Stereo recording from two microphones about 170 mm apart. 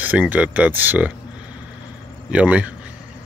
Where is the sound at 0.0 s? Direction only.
10° right (ahead or behind).